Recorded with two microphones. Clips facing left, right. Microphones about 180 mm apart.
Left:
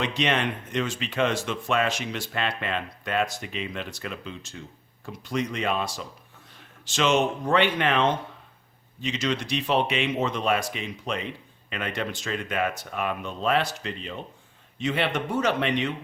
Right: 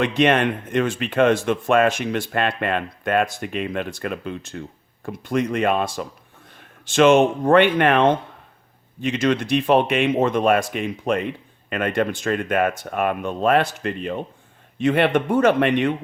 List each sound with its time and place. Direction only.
0.0 s speech: 55° right (ahead or behind)